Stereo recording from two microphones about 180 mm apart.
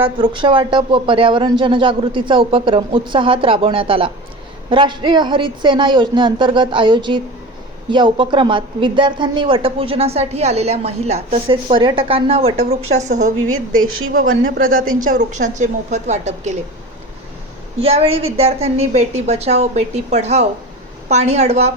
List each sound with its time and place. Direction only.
0.0 s a woman's voice: 25° right (ahead or behind)
14.9 s a woman's voice: 45° right (ahead or behind)
17.7 s a woman's voice: 35° right (ahead or behind)